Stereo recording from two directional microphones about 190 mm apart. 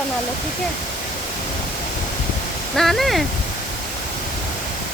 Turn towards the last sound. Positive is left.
turn(degrees=0)  # may be behind; listen again after turning